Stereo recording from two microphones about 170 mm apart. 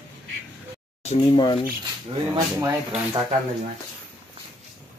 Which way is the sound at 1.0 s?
35° left (ahead or behind).